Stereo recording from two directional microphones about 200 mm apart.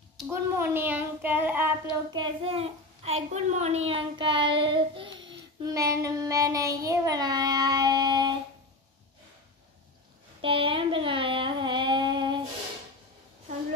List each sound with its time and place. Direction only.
0.3 s child singing: 10° right (ahead or behind)
2.0 s a child's voice: 25° right (ahead or behind)
10.4 s child singing: 25° right (ahead or behind)